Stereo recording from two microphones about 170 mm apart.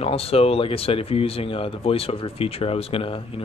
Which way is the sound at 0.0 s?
35° left (ahead or behind).